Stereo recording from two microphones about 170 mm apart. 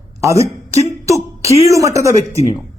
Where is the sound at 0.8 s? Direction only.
20° right (ahead or behind).